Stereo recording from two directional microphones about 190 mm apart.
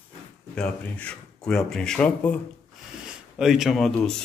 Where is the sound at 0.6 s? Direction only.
5° left (ahead or behind).